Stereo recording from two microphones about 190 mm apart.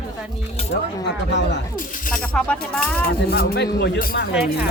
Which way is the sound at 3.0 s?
55° left (ahead or behind).